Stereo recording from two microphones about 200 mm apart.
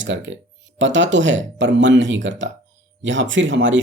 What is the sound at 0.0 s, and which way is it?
Speech, 70° right (ahead or behind).